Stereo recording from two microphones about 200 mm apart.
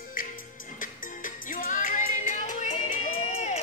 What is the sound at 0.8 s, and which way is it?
Music, 40° left (ahead or behind).